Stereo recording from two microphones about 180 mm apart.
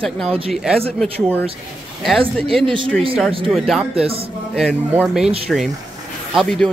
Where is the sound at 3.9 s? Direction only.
35° right (ahead or behind).